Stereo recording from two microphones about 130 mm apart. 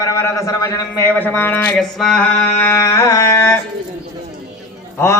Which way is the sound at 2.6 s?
20° left (ahead or behind).